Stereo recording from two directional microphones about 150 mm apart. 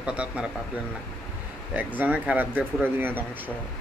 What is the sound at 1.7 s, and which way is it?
Speech, 10° right (ahead or behind).